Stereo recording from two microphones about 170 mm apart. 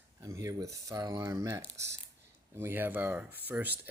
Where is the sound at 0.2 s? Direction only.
20° right (ahead or behind).